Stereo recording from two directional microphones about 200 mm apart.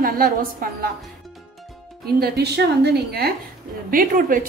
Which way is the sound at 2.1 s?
55° right (ahead or behind).